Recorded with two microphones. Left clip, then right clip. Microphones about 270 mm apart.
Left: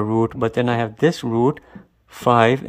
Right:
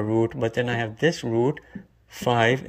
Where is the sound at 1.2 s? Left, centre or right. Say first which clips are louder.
Left 3 dB; left.